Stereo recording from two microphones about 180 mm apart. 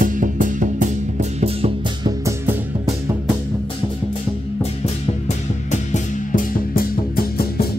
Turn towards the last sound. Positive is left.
turn(degrees=50)  # may be behind; listen again after turning